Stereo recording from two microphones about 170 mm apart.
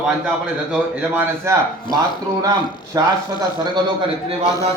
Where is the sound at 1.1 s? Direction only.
15° right (ahead or behind).